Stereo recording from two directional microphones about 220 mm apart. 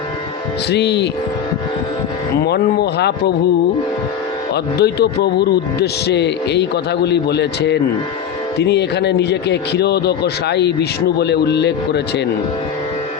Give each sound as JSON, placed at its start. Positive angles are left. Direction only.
{"t": 0.7, "sound": "a man's voice", "side_deg": 50}
{"t": 2.4, "sound": "a man's voice", "side_deg": 45}
{"t": 4.5, "sound": "a man's voice", "side_deg": 50}